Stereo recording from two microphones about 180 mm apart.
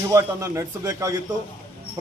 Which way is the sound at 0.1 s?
15° right (ahead or behind).